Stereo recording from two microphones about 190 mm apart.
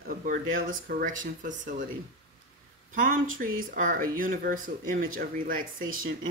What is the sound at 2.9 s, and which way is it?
Speech, 45° right (ahead or behind).